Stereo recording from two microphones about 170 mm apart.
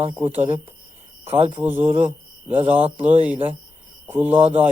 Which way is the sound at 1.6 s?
10° right (ahead or behind).